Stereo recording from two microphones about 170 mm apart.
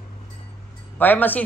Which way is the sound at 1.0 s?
10° left (ahead or behind).